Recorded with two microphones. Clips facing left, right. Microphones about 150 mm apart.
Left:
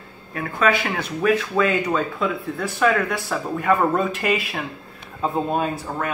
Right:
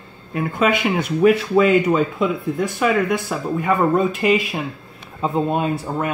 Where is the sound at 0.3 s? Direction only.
20° right (ahead or behind).